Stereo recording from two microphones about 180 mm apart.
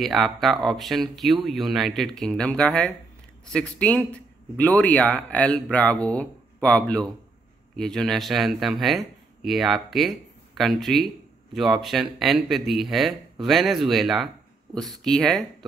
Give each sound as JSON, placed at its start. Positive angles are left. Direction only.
{"t": 0.0, "sound": "speech", "side_deg": 0}